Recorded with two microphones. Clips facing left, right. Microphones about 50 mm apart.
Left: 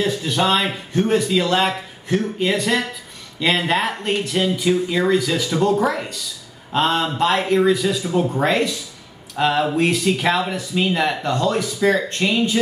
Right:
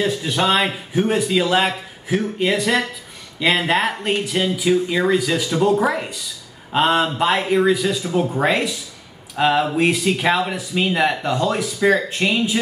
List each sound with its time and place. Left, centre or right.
0.0 s speech: centre